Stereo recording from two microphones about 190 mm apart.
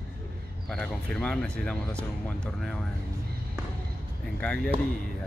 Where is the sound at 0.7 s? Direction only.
5° left (ahead or behind).